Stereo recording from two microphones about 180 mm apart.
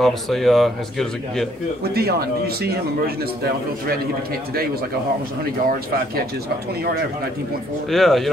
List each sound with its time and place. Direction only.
0.0 s a man's voice: centre (ahead or behind)
2.0 s speech: 60° right (ahead or behind)
5.4 s speech: 55° right (ahead or behind)
7.9 s a man's voice: centre (ahead or behind)